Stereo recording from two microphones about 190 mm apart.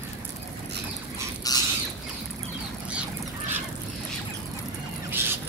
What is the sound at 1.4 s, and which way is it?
Squawk, 20° left (ahead or behind).